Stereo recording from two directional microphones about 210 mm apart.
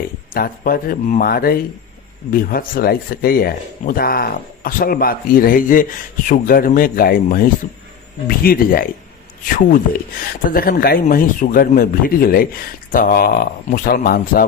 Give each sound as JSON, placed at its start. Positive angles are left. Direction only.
{"t": 0.3, "sound": "speech", "side_deg": 45}